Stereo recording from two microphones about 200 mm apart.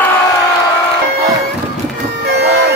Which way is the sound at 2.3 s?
55° right (ahead or behind).